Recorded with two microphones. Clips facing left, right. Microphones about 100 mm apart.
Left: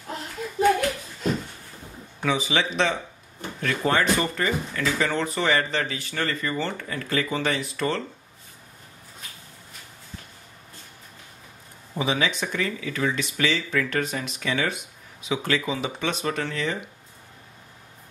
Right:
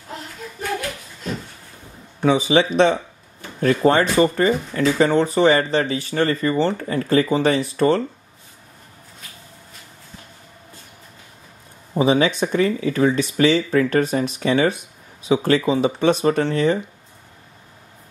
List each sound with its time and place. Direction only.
2.2 s speech: 35° right (ahead or behind)
11.9 s speech: 40° right (ahead or behind)